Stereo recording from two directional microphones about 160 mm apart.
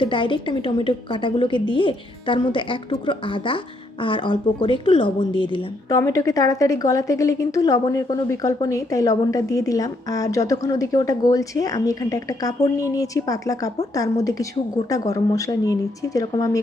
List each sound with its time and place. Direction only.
0.0 s a woman's voice: 30° left (ahead or behind)